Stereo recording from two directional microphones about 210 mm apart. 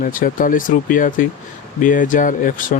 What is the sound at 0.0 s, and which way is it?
Speech, 40° left (ahead or behind).